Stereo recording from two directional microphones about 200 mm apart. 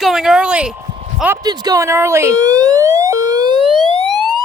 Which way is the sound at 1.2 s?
15° right (ahead or behind).